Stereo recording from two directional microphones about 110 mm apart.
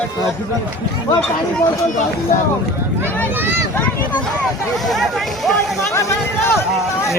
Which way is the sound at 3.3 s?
20° right (ahead or behind).